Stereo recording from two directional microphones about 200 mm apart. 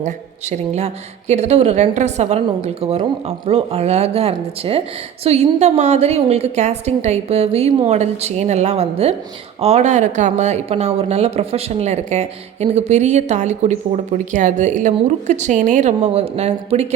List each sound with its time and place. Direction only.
0.0 s a woman's voice: 35° right (ahead or behind)